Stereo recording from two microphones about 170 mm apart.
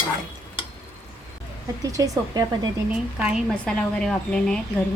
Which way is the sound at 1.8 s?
20° right (ahead or behind).